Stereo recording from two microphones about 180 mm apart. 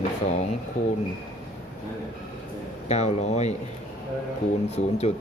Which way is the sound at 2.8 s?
40° left (ahead or behind).